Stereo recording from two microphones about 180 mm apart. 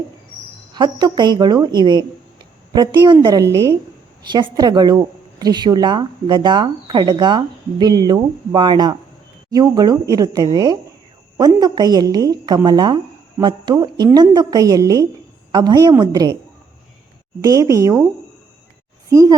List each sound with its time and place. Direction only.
0.7 s a woman's voice: 25° right (ahead or behind)
17.4 s speech: 20° right (ahead or behind)
19.1 s speech: 15° right (ahead or behind)